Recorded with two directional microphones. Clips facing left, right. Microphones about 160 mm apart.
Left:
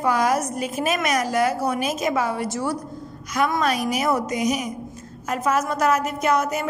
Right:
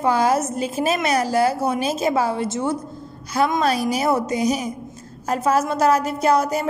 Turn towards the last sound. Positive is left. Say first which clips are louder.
# right 3 dB
turn(degrees=-35)  # may be behind; listen again after turning